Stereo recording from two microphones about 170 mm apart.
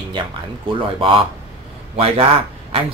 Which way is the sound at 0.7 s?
30° right (ahead or behind).